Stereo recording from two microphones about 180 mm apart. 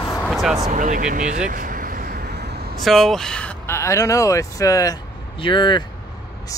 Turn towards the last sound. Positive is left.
turn(degrees=25)  # may be behind; listen again after turning